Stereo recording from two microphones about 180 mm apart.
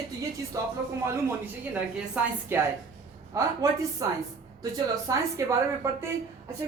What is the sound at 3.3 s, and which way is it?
Speech, 15° right (ahead or behind).